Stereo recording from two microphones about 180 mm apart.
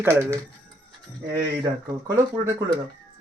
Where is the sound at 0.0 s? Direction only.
15° right (ahead or behind).